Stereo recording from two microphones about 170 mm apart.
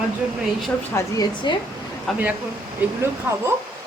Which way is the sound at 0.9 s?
20° left (ahead or behind).